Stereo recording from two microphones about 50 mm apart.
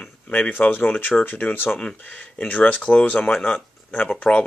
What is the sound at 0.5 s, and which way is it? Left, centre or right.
Speech, left.